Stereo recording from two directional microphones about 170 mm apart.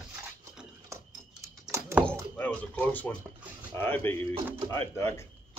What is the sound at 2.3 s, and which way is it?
Speech, 10° left (ahead or behind).